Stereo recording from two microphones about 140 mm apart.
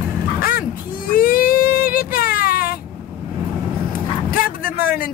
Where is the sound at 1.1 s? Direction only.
90° left.